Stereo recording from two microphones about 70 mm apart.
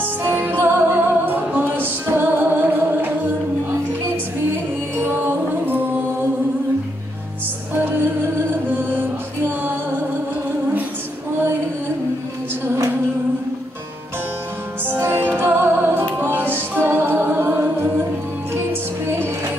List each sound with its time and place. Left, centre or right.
0.3 s music: right
4.9 s music: right
7.7 s music: right
14.9 s music: right
19.0 s music: right